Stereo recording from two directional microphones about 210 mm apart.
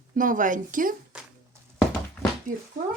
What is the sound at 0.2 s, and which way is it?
Speech, 40° right (ahead or behind).